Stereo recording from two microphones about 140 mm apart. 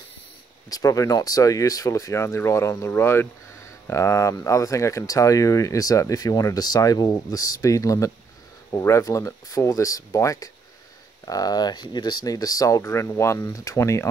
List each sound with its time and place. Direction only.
0.7 s speech: 25° left (ahead or behind)